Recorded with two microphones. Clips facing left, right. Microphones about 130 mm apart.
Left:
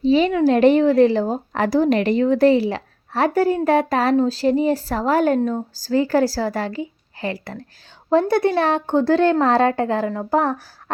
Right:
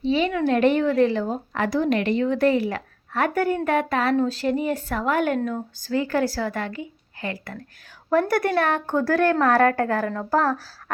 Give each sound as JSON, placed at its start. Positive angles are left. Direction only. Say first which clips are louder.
{"t": 0.0, "sound": "a woman's voice", "louder": "left 6 dB", "side_deg": 35}
{"t": 8.3, "sound": "a woman's voice", "louder": "left 4 dB", "side_deg": 25}